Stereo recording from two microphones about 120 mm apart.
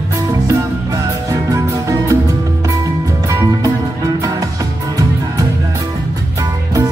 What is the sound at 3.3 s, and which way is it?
Music, 25° right (ahead or behind).